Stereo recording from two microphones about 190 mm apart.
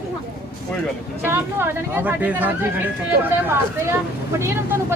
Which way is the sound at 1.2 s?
10° right (ahead or behind).